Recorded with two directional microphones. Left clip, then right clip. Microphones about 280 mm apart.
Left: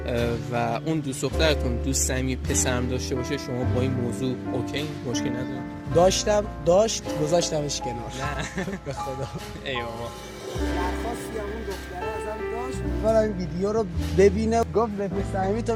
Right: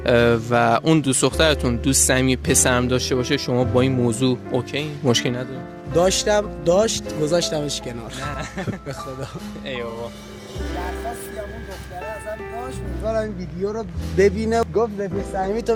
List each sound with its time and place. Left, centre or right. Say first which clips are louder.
0.0 s a man's voice: right 10 dB; right
5.9 s speech: right 2 dB; right
13.1 s speech: left 2 dB; centre
14.2 s speech: right 2 dB; centre